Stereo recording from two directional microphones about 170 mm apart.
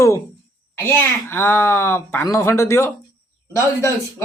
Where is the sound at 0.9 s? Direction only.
15° left (ahead or behind).